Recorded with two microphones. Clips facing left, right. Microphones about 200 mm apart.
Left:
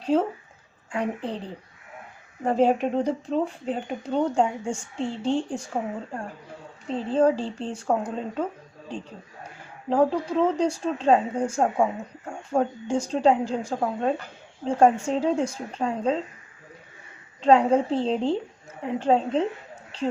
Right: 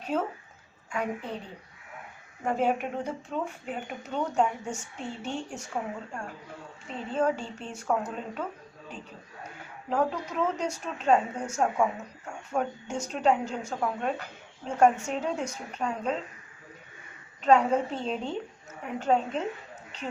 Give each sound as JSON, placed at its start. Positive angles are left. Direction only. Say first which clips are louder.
{"t": 0.0, "sound": "a woman's voice", "louder": "left 7 dB", "side_deg": 30}
{"t": 2.4, "sound": "speech", "louder": "left 6 dB", "side_deg": 35}
{"t": 9.9, "sound": "speech", "louder": "left 7 dB", "side_deg": 30}
{"t": 17.4, "sound": "speech", "louder": "left 4 dB", "side_deg": 30}